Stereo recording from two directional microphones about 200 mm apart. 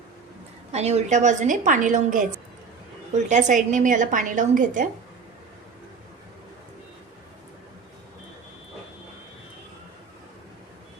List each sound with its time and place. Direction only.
0.7 s a woman's voice: 35° right (ahead or behind)
3.2 s a woman's voice: 35° right (ahead or behind)